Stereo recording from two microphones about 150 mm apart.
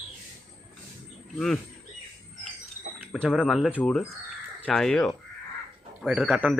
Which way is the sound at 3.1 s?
Centre (ahead or behind).